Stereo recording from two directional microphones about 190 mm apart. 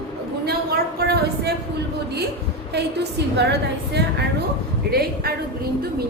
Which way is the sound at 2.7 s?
65° right (ahead or behind).